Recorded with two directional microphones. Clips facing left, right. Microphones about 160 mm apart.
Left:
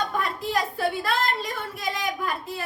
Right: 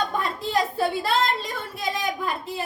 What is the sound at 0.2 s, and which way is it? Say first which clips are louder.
A woman's voice: right 2 dB; 25° right (ahead or behind).